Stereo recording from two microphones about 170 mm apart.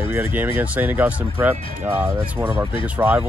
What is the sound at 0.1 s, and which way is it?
Speech, 15° right (ahead or behind).